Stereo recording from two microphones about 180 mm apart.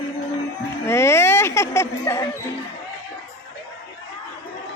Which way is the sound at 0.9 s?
15° left (ahead or behind).